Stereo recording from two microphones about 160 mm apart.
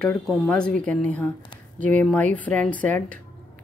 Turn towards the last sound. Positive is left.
turn(degrees=10)  # may be behind; listen again after turning